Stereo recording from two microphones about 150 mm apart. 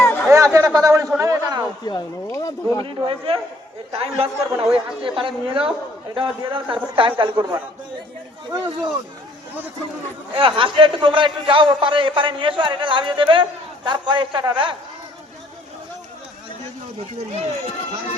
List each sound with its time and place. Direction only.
0.0 s a sound: 10° left (ahead or behind)
0.3 s a sound: 20° right (ahead or behind)
1.8 s speech: 25° left (ahead or behind)
2.8 s a man's voice: 35° right (ahead or behind)
8.4 s speech: 30° right (ahead or behind)
10.3 s a man's voice: 35° right (ahead or behind)